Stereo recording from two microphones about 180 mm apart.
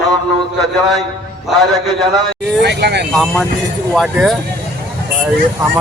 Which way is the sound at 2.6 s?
65° right (ahead or behind).